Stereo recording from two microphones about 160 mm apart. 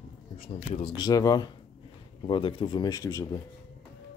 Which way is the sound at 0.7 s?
35° left (ahead or behind).